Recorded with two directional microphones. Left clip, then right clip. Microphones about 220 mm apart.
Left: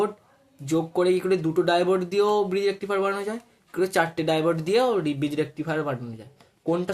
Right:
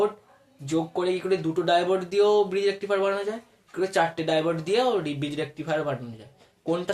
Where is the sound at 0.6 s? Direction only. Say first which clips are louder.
Left 3 dB; 40° left (ahead or behind).